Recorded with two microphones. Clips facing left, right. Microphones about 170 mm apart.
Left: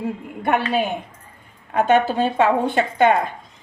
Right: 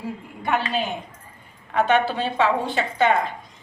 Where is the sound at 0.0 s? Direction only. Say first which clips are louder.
Left 5 dB; 55° left (ahead or behind).